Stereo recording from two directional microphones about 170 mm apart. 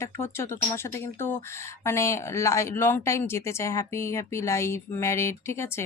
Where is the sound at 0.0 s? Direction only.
15° left (ahead or behind).